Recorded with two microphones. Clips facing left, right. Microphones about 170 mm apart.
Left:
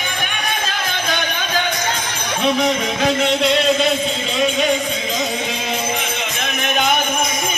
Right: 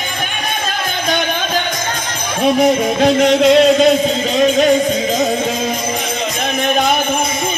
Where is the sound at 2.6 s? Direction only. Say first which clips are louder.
Right 6 dB; 40° right (ahead or behind).